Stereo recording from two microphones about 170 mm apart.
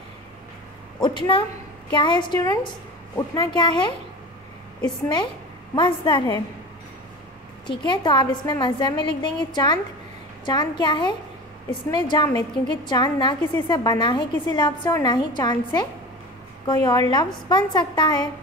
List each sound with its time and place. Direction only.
1.0 s a woman's voice: 25° left (ahead or behind)
7.6 s a woman's voice: 30° left (ahead or behind)